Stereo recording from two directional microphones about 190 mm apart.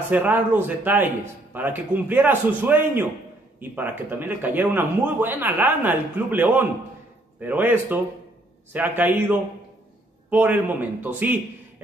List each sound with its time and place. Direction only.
0.1 s speech: 10° right (ahead or behind)